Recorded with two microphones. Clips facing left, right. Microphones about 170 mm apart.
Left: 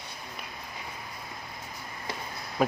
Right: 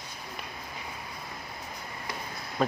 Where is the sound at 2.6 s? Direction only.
5° left (ahead or behind).